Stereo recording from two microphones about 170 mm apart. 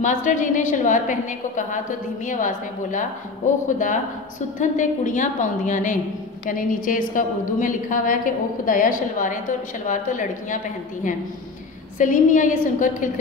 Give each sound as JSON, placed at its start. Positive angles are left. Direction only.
{"t": 0.0, "sound": "a woman's voice", "side_deg": 45}
{"t": 2.2, "sound": "a woman's voice", "side_deg": 50}
{"t": 12.0, "sound": "a woman's voice", "side_deg": 50}